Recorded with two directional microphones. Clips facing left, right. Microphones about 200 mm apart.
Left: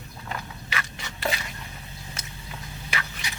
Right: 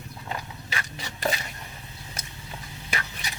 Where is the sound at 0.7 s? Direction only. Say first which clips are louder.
Left 1 dB; 35° right (ahead or behind).